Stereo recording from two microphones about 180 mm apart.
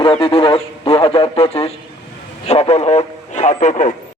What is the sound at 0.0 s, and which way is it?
A man's voice, 30° left (ahead or behind).